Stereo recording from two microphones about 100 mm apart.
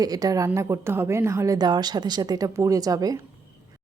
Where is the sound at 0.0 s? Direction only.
40° right (ahead or behind).